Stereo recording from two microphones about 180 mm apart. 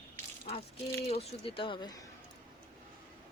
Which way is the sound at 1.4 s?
30° left (ahead or behind).